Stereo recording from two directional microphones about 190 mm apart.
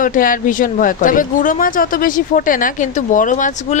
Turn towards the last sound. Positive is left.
turn(degrees=40)  # may be behind; listen again after turning